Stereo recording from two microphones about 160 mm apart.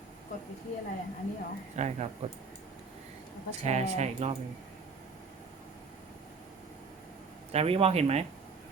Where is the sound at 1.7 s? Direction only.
45° right (ahead or behind).